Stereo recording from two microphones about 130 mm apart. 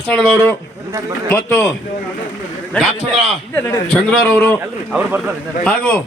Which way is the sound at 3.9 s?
10° left (ahead or behind).